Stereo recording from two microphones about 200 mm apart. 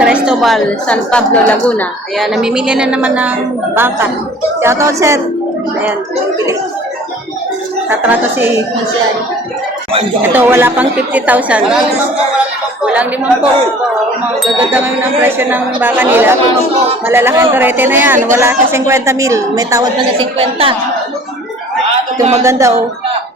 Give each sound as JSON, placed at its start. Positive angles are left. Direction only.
{"t": 0.0, "sound": "a woman's voice", "side_deg": -5}
{"t": 7.9, "sound": "speech", "side_deg": -10}
{"t": 10.2, "sound": "speech", "side_deg": -10}
{"t": 12.8, "sound": "speech", "side_deg": -5}
{"t": 20.1, "sound": "a woman's voice", "side_deg": -30}
{"t": 22.4, "sound": "speech", "side_deg": -15}